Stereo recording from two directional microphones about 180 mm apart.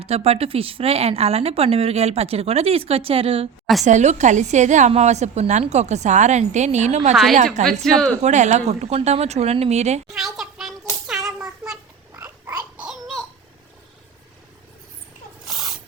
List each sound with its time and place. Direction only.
0.0 s speech: 35° right (ahead or behind)
7.1 s speech: centre (ahead or behind)
8.2 s speech: 40° right (ahead or behind)
10.2 s a sound: centre (ahead or behind)
12.1 s babbling: 15° right (ahead or behind)
15.4 s snake: centre (ahead or behind)